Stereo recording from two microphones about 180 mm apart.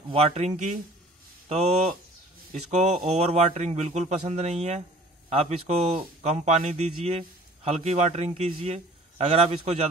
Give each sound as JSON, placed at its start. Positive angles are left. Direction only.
{"t": 0.1, "sound": "a man's voice", "side_deg": -40}